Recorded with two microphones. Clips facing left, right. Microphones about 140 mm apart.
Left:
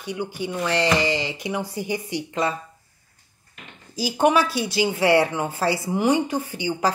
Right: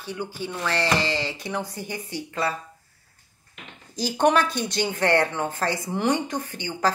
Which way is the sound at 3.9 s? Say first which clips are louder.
Left 1 dB; 10° left (ahead or behind).